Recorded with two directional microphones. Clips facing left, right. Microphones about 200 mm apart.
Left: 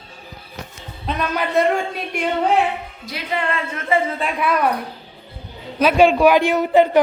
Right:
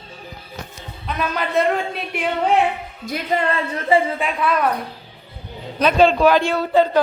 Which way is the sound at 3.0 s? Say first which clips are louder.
Right 3 dB; 45° right (ahead or behind).